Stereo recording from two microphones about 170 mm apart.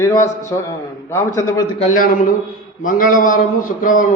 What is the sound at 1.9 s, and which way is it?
A man's voice, 55° left (ahead or behind).